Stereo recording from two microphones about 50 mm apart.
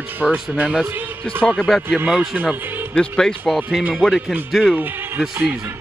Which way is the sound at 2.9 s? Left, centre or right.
Centre.